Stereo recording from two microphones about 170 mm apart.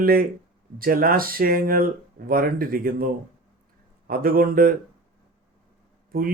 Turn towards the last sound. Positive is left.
turn(degrees=-55)  # may be behind; listen again after turning